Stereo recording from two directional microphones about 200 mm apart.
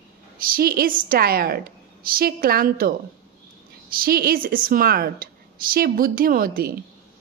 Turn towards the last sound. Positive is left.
turn(degrees=-45)  # may be behind; listen again after turning